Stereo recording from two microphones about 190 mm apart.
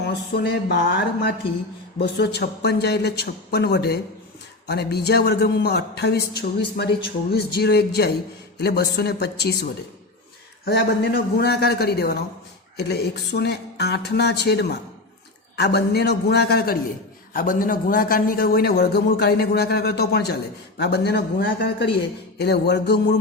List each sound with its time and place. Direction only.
0.0 s speech: 60° left (ahead or behind)
10.7 s a man's voice: 60° left (ahead or behind)